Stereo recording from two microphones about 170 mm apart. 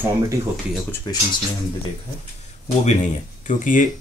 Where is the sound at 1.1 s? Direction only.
25° left (ahead or behind).